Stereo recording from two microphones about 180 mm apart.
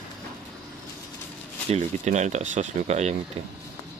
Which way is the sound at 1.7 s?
40° right (ahead or behind).